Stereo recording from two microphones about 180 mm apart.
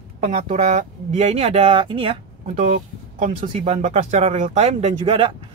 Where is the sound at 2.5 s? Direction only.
40° right (ahead or behind).